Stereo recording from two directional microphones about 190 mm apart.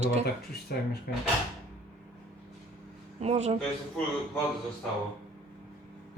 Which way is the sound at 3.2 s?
35° right (ahead or behind).